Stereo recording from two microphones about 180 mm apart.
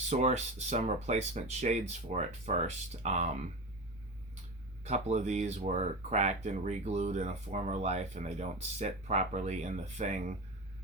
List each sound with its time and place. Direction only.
0.1 s speech: 40° right (ahead or behind)
4.8 s speech: 40° right (ahead or behind)